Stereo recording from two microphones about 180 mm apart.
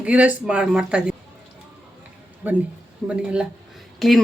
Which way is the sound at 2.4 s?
10° right (ahead or behind).